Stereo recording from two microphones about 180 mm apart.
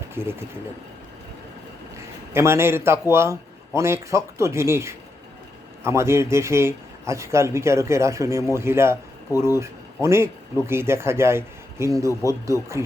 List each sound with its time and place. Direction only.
0.1 s speech: 15° right (ahead or behind)
2.3 s speech: 15° right (ahead or behind)